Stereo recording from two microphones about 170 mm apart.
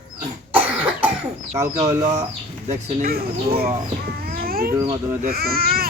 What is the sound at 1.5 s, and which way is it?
Speech, 20° right (ahead or behind).